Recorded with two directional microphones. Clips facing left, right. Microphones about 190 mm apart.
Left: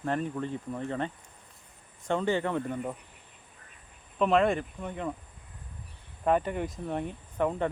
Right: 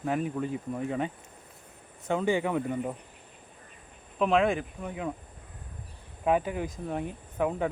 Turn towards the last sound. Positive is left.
turn(degrees=-5)  # may be behind; listen again after turning